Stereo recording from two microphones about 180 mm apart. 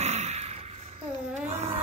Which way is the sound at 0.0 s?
40° right (ahead or behind).